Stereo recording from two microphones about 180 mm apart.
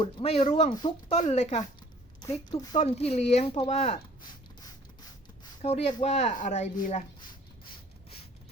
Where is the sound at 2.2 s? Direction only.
20° left (ahead or behind).